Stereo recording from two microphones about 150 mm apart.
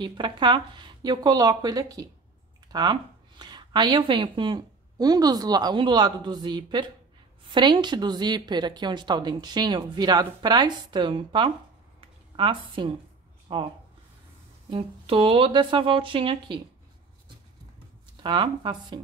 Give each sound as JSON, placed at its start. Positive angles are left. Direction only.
{"t": 0.0, "sound": "speech", "side_deg": -30}
{"t": 14.7, "sound": "speech", "side_deg": -40}
{"t": 18.2, "sound": "speech", "side_deg": -35}